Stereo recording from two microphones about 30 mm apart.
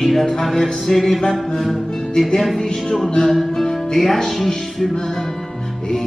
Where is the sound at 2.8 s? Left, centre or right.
Centre.